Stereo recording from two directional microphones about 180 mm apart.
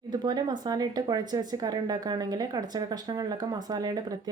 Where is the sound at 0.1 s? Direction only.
25° right (ahead or behind).